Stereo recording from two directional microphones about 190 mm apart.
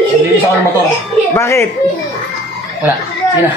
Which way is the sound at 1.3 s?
15° left (ahead or behind).